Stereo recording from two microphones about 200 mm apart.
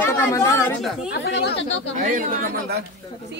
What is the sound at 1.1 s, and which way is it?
Speech, 60° left (ahead or behind).